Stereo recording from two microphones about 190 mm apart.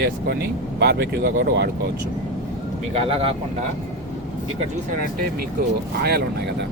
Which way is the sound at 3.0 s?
30° right (ahead or behind).